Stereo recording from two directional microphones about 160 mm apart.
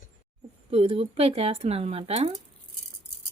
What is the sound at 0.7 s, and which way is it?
Speech, 35° right (ahead or behind).